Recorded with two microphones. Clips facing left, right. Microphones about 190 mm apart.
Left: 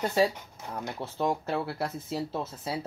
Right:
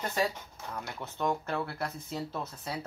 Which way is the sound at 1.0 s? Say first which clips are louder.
Left 2 dB; 30° left (ahead or behind).